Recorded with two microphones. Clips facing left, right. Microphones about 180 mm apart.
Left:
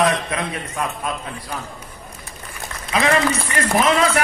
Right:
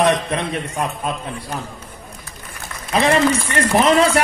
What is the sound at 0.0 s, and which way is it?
A man's voice, 30° right (ahead or behind).